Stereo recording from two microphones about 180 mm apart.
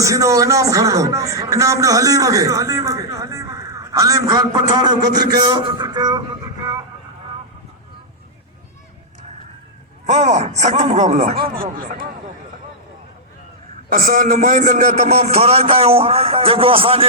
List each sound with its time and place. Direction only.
0.0 s a man's voice: 15° right (ahead or behind)
10.1 s a man's voice: 40° right (ahead or behind)
13.9 s a man's voice: 50° right (ahead or behind); by 17.1 s 30° right (ahead or behind)